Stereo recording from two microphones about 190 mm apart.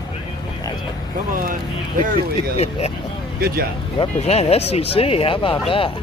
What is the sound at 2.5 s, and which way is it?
Speech, 35° left (ahead or behind).